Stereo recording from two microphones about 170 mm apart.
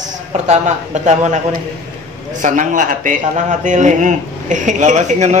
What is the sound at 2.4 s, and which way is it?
Speech, 50° right (ahead or behind).